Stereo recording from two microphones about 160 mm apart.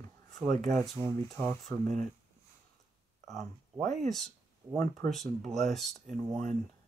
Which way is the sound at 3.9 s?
Centre (ahead or behind).